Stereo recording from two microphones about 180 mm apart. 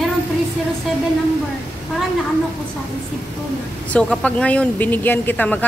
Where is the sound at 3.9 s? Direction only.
5° left (ahead or behind).